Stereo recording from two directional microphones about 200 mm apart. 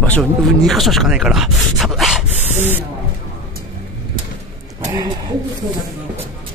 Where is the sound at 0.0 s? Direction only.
5° left (ahead or behind).